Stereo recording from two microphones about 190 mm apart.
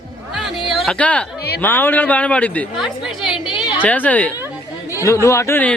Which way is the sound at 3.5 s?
25° left (ahead or behind).